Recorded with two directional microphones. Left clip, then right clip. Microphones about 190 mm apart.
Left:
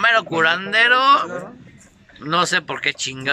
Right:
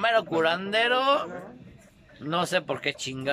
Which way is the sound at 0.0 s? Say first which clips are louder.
Left 7 dB; 20° right (ahead or behind).